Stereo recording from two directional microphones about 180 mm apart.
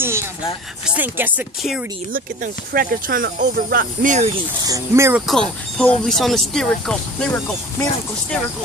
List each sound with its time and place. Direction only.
0.0 s a sound: 15° right (ahead or behind)
0.8 s speech: 10° right (ahead or behind)
2.1 s speech: 50° right (ahead or behind)
4.6 s speech: 15° right (ahead or behind)
5.2 s speech: 5° left (ahead or behind)